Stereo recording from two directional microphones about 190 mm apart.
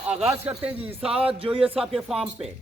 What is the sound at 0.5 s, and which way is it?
Speech, 30° right (ahead or behind).